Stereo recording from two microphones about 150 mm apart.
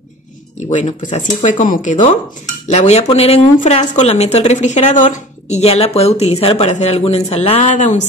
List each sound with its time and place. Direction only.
0.7 s speech: 55° left (ahead or behind)